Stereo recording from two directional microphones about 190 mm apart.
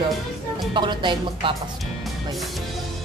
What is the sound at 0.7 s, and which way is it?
Speech, 25° right (ahead or behind).